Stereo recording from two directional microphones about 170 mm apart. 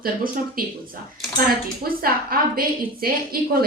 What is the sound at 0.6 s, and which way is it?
Speech, 55° right (ahead or behind).